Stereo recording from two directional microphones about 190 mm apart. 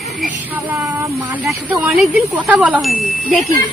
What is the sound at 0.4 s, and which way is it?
Speech, 10° right (ahead or behind).